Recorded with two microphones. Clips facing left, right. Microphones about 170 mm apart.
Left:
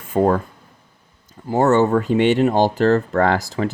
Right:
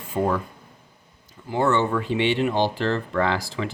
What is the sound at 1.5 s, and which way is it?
Speech, 45° left (ahead or behind).